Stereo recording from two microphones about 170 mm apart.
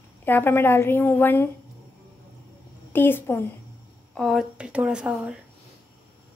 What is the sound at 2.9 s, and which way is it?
Speech, 10° left (ahead or behind).